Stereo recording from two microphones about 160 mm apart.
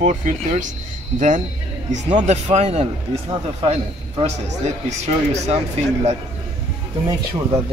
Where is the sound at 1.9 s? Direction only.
50° right (ahead or behind).